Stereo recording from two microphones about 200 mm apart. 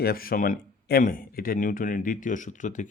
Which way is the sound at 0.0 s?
50° left (ahead or behind).